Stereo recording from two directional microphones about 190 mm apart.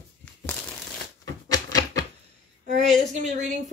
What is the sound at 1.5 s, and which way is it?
Typewriter, 20° left (ahead or behind).